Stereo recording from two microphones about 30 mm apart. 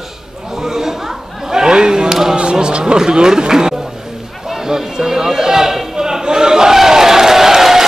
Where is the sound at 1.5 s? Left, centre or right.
Right.